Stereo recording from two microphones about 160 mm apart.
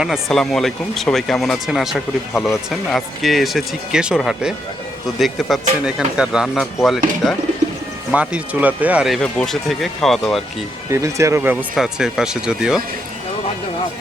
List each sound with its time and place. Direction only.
0.0 s speech: centre (ahead or behind)
8.1 s speech: 10° right (ahead or behind)
10.9 s speech: 20° right (ahead or behind)
11.7 s speech: 5° right (ahead or behind)